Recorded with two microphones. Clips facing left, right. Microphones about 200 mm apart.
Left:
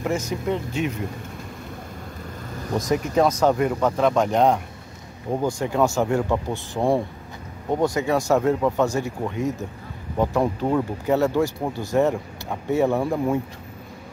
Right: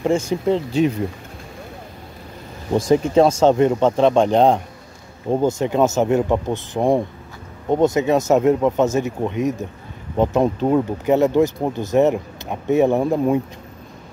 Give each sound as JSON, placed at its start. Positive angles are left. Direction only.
{"t": 0.0, "sound": "speech", "side_deg": -30}
{"t": 2.7, "sound": "speech", "side_deg": -30}